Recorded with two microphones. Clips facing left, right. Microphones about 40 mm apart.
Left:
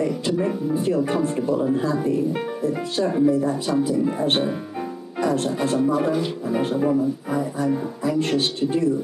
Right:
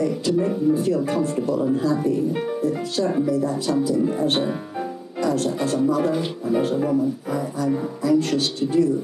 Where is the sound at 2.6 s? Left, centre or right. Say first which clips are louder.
Even; left.